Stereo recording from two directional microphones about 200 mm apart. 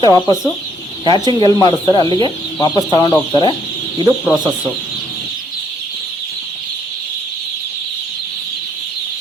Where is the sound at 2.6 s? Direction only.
20° left (ahead or behind).